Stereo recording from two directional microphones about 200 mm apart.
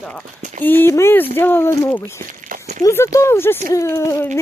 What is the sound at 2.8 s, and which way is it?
Speech, 15° left (ahead or behind).